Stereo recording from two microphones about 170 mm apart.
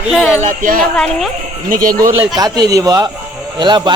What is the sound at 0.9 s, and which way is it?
Speech, centre (ahead or behind).